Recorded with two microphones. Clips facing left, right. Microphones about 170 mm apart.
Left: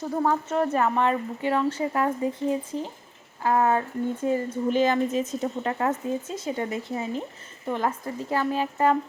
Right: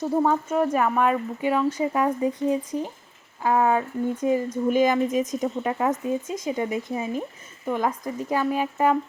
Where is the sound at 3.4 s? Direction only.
10° right (ahead or behind).